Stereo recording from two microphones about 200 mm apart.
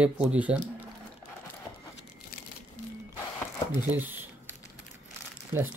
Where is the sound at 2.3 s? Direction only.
50° left (ahead or behind).